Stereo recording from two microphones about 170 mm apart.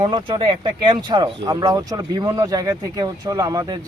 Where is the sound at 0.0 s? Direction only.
30° right (ahead or behind).